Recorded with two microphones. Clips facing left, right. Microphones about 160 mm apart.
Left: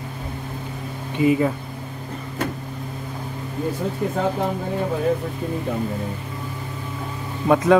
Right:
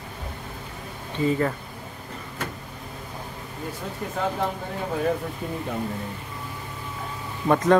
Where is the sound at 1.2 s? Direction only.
10° left (ahead or behind).